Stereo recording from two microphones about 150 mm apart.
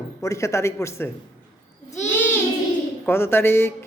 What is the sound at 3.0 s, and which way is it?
Speech, 15° left (ahead or behind).